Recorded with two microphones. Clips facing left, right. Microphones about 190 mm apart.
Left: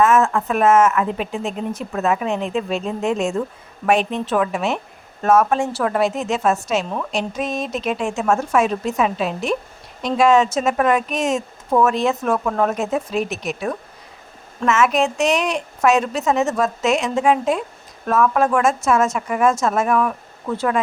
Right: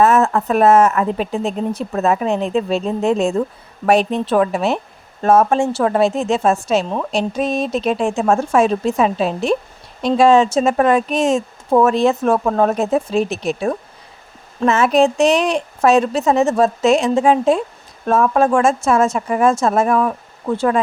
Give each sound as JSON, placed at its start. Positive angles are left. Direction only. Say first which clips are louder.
{"t": 0.0, "sound": "a woman's voice", "louder": "right 2 dB", "side_deg": -35}